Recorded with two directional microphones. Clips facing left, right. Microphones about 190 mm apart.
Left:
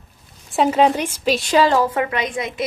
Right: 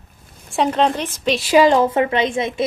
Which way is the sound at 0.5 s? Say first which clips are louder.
Left 2 dB; 5° left (ahead or behind).